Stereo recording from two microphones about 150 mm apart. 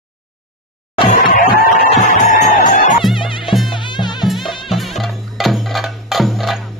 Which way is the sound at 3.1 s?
35° left (ahead or behind).